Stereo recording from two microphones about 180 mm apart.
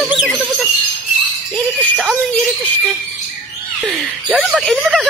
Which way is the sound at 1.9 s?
Centre (ahead or behind).